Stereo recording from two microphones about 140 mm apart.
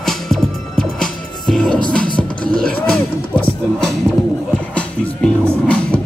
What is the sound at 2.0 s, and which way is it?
Music, 90° right.